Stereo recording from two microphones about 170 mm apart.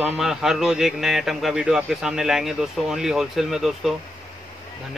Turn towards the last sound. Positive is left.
turn(degrees=0)  # may be behind; listen again after turning